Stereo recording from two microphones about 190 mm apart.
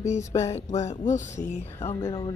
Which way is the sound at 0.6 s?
40° left (ahead or behind).